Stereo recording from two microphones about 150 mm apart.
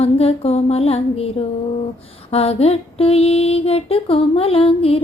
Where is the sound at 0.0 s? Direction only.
40° left (ahead or behind).